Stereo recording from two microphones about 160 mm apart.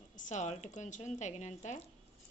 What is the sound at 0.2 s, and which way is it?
A woman's voice, 50° left (ahead or behind).